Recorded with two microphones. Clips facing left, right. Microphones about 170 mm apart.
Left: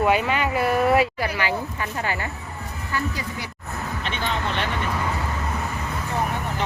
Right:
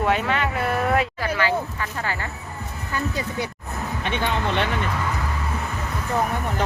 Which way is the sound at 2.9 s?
25° right (ahead or behind).